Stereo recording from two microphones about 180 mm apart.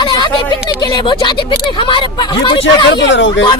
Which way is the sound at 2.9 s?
80° left.